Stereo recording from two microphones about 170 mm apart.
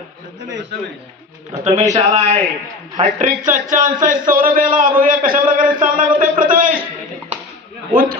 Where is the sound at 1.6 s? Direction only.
45° right (ahead or behind).